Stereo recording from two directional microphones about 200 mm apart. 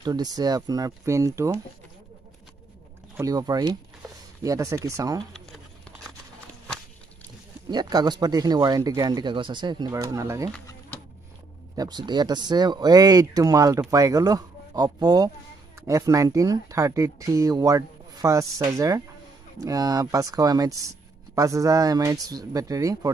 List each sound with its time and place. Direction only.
0.0 s speech: 20° right (ahead or behind)
3.2 s speech: 20° right (ahead or behind)
7.7 s speech: 20° right (ahead or behind)
11.7 s speech: 20° right (ahead or behind)